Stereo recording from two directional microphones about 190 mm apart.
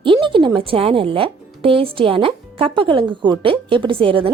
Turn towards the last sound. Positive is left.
turn(degrees=-30)  # may be behind; listen again after turning